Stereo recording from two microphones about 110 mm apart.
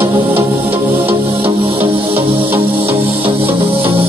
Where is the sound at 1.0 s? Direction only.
55° right (ahead or behind).